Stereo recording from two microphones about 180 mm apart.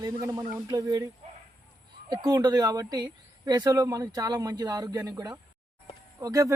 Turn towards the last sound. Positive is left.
turn(degrees=-20)  # may be behind; listen again after turning